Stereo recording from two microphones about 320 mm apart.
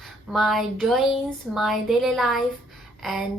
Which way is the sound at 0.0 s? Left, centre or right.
Centre.